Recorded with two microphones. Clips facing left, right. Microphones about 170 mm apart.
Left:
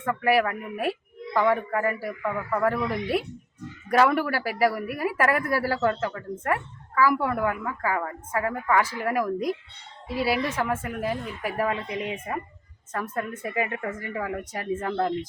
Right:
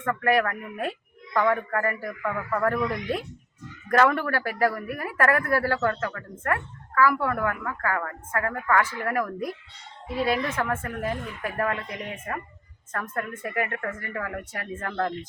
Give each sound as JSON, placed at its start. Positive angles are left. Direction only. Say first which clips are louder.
{"t": 0.0, "sound": "a woman's voice", "louder": "left 1 dB", "side_deg": 10}